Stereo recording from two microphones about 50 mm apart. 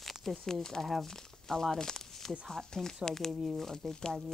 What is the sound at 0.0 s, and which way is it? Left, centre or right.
Speech, centre.